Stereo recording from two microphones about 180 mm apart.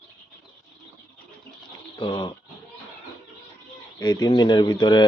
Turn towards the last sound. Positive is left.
turn(degrees=25)  # may be behind; listen again after turning